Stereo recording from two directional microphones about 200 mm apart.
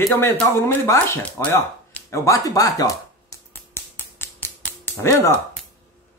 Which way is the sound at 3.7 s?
10° left (ahead or behind).